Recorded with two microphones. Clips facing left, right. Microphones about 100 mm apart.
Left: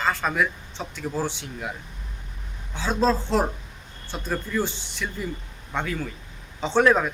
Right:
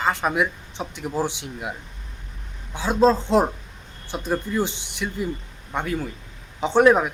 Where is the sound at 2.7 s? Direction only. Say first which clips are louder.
Right 4 dB; 15° right (ahead or behind).